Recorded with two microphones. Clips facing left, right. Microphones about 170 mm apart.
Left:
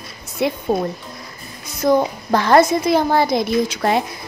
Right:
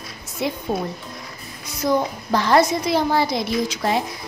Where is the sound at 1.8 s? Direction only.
55° left (ahead or behind).